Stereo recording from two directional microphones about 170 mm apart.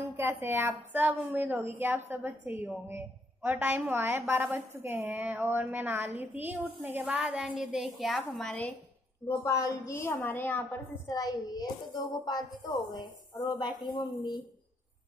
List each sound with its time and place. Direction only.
0.1 s a woman's voice: 15° right (ahead or behind); by 8.7 s 5° left (ahead or behind)
9.4 s a woman's voice: 20° left (ahead or behind)